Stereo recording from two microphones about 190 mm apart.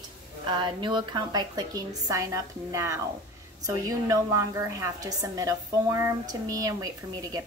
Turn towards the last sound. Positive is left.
turn(degrees=-20)  # may be behind; listen again after turning